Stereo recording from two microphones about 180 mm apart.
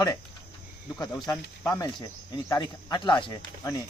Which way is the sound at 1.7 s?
25° left (ahead or behind).